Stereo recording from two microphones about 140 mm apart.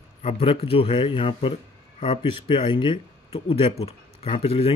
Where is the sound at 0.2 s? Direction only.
45° left (ahead or behind).